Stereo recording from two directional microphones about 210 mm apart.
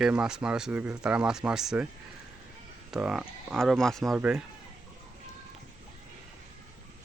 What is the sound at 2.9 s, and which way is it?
Speech, 5° right (ahead or behind).